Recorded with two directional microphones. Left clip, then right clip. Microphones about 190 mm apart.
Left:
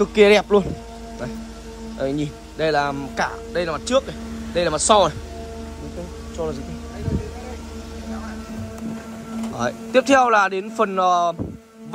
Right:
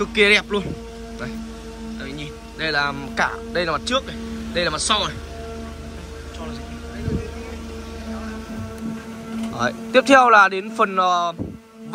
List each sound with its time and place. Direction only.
0.0 s speech: 20° left (ahead or behind)
2.0 s speech: 30° left (ahead or behind)
9.6 s speech: 15° left (ahead or behind)